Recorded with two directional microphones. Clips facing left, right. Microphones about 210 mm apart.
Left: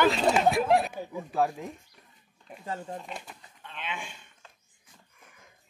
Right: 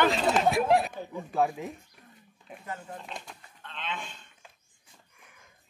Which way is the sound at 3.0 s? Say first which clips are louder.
Left 1 dB; 5° left (ahead or behind).